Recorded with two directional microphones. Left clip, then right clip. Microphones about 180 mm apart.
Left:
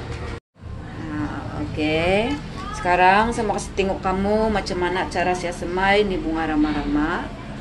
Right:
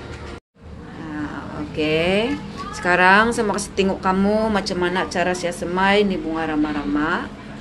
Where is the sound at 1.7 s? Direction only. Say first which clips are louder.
Right 1 dB; 15° right (ahead or behind).